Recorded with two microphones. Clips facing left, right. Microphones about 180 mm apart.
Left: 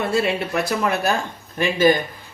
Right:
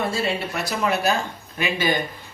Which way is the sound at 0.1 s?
60° left (ahead or behind).